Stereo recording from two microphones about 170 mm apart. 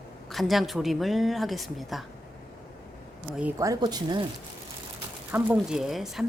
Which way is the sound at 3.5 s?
20° right (ahead or behind).